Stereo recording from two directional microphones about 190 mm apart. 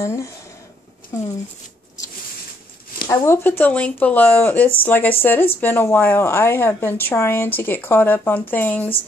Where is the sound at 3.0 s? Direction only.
15° left (ahead or behind).